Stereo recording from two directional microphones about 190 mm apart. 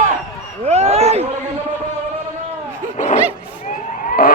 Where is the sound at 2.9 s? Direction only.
40° left (ahead or behind).